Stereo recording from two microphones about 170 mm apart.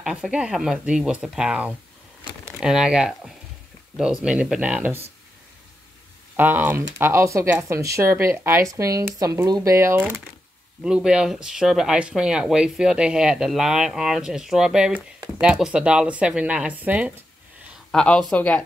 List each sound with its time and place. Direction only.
0.0 s speech: 5° right (ahead or behind)
6.3 s speech: 10° right (ahead or behind)
17.9 s speech: 5° left (ahead or behind)